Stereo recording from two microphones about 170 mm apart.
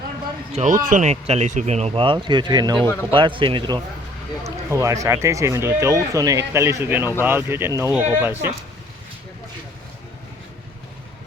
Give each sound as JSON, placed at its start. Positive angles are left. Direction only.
{"t": 0.5, "sound": "speech", "side_deg": -45}